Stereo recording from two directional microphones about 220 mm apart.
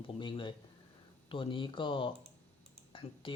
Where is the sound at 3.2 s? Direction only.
25° left (ahead or behind).